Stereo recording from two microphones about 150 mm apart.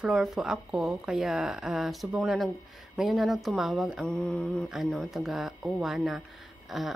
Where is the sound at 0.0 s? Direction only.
5° right (ahead or behind).